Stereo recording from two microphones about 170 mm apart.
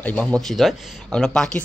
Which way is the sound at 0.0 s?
10° left (ahead or behind).